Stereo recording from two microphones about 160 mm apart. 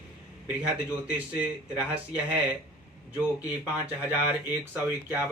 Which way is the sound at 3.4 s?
10° right (ahead or behind).